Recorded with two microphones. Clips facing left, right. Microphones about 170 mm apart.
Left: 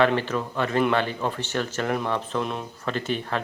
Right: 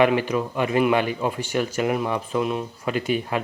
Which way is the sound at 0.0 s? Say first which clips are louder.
Right 3 dB; 10° right (ahead or behind).